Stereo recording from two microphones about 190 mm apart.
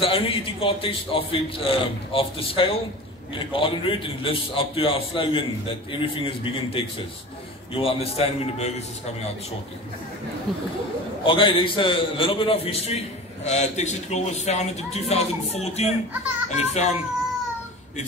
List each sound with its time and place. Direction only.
0.0 s a man's voice: 30° left (ahead or behind)
11.2 s a man's voice: 25° left (ahead or behind)